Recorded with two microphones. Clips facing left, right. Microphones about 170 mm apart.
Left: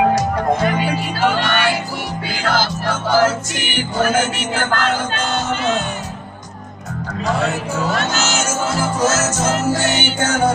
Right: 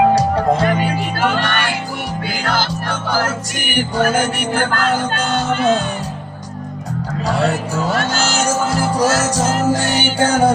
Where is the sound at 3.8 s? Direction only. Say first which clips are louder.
Right 1 dB; 35° right (ahead or behind).